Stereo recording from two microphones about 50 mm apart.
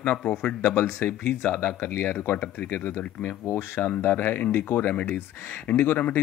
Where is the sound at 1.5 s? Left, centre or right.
Left.